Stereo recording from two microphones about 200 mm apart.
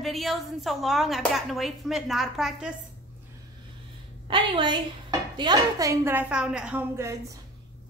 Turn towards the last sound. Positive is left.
turn(degrees=-10)  # may be behind; listen again after turning